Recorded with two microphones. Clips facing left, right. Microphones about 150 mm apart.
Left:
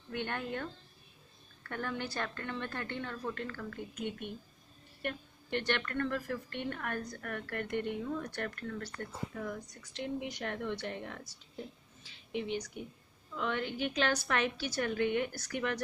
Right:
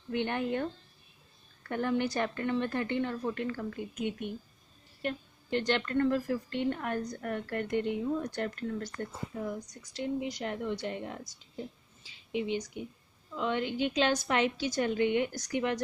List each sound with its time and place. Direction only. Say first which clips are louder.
0.1 s a woman's voice: right 6 dB; 20° right (ahead or behind)
1.7 s a woman's voice: right 8 dB; 15° right (ahead or behind)